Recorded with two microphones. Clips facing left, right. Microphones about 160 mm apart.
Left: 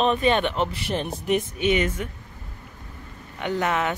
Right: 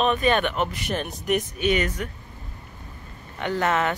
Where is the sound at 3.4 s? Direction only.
15° left (ahead or behind).